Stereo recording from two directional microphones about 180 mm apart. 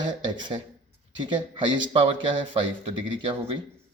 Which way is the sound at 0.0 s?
25° right (ahead or behind).